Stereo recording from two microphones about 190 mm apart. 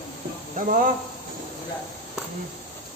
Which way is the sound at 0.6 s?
45° right (ahead or behind).